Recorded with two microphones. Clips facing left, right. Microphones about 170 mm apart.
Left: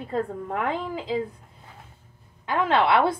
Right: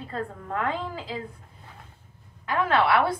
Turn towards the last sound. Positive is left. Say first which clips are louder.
# left 2 dB
turn(degrees=25)  # may be behind; listen again after turning